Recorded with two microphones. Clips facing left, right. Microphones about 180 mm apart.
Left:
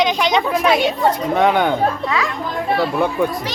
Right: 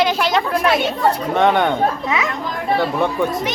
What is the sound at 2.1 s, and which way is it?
Speech, 20° right (ahead or behind).